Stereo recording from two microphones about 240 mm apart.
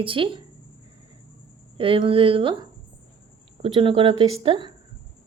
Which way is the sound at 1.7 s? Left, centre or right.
Right.